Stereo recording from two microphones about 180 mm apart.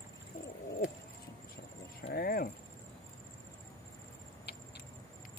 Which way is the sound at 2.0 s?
55° left (ahead or behind).